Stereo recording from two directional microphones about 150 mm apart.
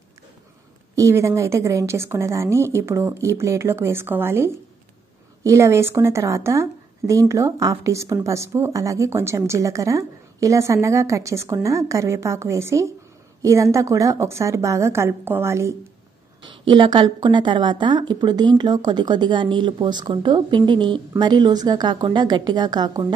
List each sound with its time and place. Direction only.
0.9 s a woman's voice: 20° right (ahead or behind)
16.4 s a woman's voice: 30° right (ahead or behind)